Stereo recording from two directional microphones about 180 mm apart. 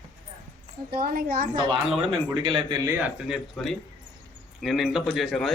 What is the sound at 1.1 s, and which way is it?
Speech, 55° right (ahead or behind).